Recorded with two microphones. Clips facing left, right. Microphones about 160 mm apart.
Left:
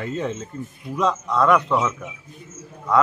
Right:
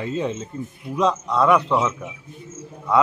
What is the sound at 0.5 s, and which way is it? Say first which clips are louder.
Speech: right 2 dB; 30° right (ahead or behind).